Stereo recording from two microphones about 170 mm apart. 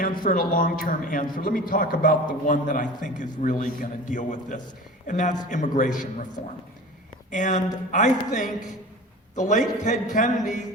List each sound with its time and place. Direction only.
0.0 s a man's voice: 55° left (ahead or behind)
7.3 s a man's voice: 50° left (ahead or behind)